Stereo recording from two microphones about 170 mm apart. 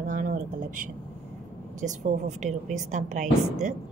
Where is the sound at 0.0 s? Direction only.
50° right (ahead or behind).